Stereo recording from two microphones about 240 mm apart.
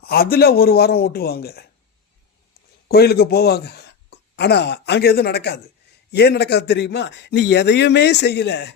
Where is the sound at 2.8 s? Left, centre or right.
Left.